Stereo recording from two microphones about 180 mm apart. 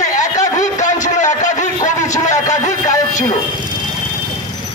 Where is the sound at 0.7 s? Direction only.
40° left (ahead or behind).